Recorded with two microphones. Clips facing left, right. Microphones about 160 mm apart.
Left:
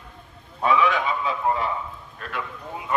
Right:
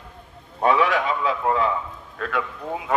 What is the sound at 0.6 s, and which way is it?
Speech, 65° right (ahead or behind).